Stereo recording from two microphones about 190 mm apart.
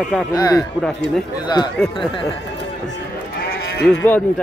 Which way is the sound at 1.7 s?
Centre (ahead or behind).